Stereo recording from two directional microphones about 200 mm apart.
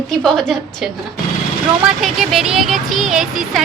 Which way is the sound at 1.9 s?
Centre (ahead or behind).